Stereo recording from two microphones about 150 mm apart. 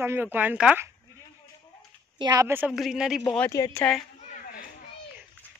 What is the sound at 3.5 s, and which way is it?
Speech, 20° left (ahead or behind).